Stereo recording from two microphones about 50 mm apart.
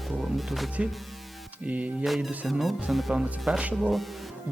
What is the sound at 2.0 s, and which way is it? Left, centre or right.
Music, centre.